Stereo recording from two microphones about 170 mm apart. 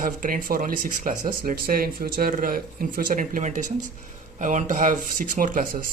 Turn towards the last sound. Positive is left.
turn(degrees=-50)  # may be behind; listen again after turning